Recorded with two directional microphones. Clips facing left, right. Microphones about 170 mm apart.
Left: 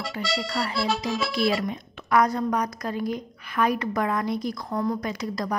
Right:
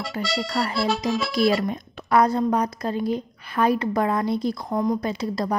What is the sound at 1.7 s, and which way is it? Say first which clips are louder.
A woman's voice: right 2 dB; 35° right (ahead or behind).